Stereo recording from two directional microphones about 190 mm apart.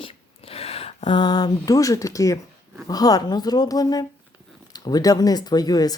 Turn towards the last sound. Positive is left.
turn(degrees=20)  # may be behind; listen again after turning